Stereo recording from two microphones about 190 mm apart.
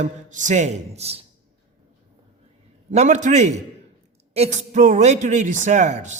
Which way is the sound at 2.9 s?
40° right (ahead or behind).